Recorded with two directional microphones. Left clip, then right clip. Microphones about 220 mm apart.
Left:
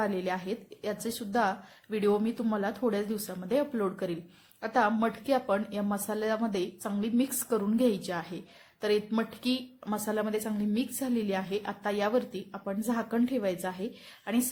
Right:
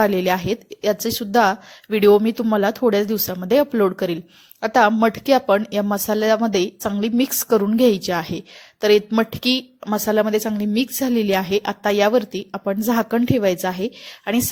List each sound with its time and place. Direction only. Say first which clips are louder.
0.0 s a woman's voice: right 13 dB; 35° right (ahead or behind)